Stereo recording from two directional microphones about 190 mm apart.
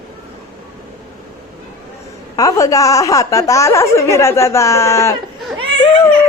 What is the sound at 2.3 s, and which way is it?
Speech, 15° left (ahead or behind).